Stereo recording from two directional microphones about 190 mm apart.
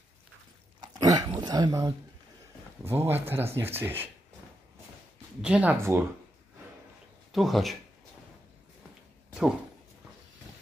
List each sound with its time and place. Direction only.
0.7 s dog: 20° right (ahead or behind)
2.8 s speech: 10° right (ahead or behind)
5.4 s speech: 5° right (ahead or behind)
7.3 s speech: centre (ahead or behind)